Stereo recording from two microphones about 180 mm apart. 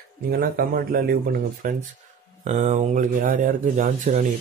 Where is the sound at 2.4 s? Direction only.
40° right (ahead or behind).